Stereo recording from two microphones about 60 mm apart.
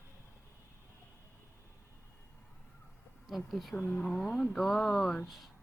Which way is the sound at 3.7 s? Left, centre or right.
Left.